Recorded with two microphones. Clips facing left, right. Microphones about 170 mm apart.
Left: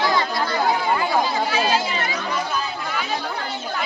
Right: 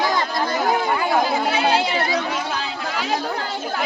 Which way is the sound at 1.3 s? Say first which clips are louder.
Right 2 dB; 65° right (ahead or behind).